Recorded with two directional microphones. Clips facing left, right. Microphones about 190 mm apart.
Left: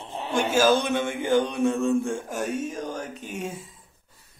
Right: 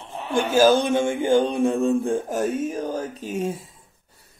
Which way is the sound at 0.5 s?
35° right (ahead or behind).